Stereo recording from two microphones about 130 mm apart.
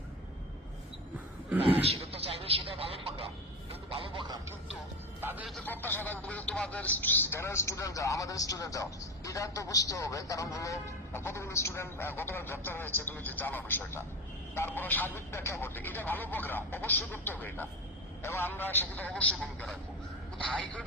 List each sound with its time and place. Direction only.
1.6 s a sound: 50° right (ahead or behind)
3.7 s music: 45° right (ahead or behind)
5.2 s a man's voice: 15° right (ahead or behind)
5.6 s speech: 15° left (ahead or behind)